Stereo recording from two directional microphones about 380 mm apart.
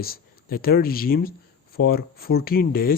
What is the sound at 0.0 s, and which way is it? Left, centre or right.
Speech, left.